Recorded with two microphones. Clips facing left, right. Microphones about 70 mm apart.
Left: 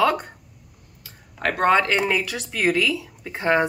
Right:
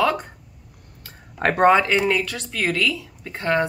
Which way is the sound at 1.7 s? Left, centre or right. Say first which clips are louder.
Right 1 dB; centre.